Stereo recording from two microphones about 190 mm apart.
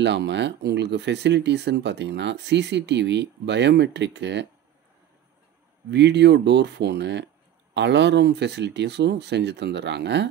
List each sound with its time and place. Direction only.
0.0 s speech: 65° right (ahead or behind)
5.9 s speech: 65° right (ahead or behind)